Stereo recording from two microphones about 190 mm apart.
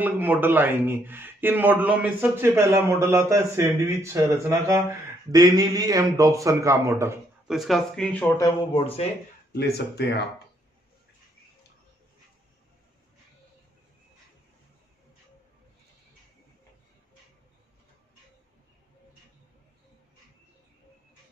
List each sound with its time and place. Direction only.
0.0 s a man's voice: 10° right (ahead or behind)
7.4 s speech: centre (ahead or behind)
8.4 s speech: 30° left (ahead or behind)
9.5 s speech: 60° left (ahead or behind)